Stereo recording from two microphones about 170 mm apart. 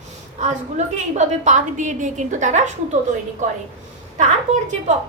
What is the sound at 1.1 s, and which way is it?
A woman's voice, 45° right (ahead or behind).